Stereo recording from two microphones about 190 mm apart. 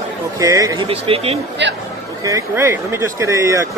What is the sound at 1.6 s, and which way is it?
Speech, 70° right (ahead or behind).